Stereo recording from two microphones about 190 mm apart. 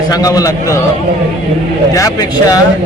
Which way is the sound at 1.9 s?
20° left (ahead or behind).